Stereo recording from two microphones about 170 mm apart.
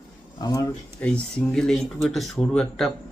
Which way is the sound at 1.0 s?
5° left (ahead or behind).